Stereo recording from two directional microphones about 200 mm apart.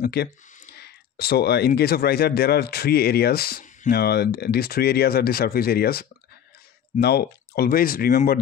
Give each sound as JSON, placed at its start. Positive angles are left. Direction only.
{"t": 0.0, "sound": "speech", "side_deg": 50}
{"t": 0.7, "sound": "a sound", "side_deg": 50}
{"t": 1.7, "sound": "speech", "side_deg": 50}